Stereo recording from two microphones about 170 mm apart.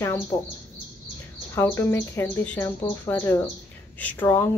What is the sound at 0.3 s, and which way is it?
Speech, 20° left (ahead or behind).